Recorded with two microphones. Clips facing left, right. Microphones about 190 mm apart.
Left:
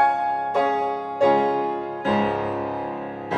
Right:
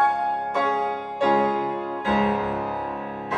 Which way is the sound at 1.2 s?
30° left (ahead or behind).